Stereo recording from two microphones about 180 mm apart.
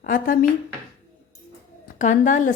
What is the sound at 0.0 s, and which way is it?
Speech, 50° left (ahead or behind).